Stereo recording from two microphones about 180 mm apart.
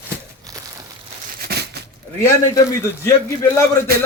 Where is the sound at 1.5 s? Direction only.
60° right (ahead or behind).